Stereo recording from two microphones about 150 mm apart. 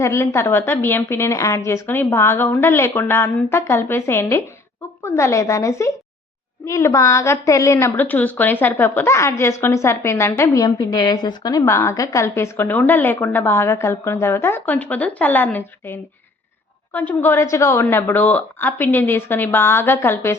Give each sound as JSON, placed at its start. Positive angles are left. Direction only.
{"t": 0.0, "sound": "a woman's voice", "side_deg": 20}